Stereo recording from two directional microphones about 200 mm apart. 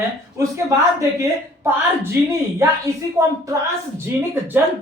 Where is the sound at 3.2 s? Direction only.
15° right (ahead or behind).